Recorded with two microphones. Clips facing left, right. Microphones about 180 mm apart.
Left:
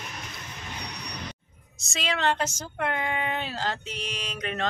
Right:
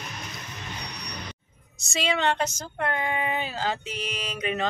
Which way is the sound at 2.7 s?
Centre (ahead or behind).